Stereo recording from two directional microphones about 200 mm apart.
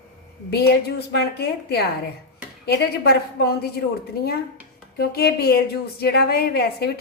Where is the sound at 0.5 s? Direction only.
55° left (ahead or behind).